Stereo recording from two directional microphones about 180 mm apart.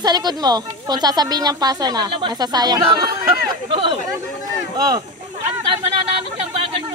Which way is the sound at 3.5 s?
30° right (ahead or behind).